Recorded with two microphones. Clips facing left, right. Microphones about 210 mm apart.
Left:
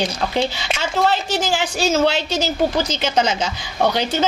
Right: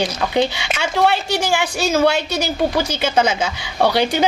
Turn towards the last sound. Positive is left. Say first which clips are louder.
# right 2 dB
turn(degrees=-10)  # may be behind; listen again after turning